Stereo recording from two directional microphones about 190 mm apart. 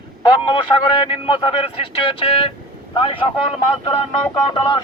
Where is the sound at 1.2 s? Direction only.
30° left (ahead or behind).